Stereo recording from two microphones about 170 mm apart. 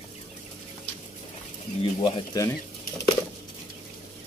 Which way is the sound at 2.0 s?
30° left (ahead or behind).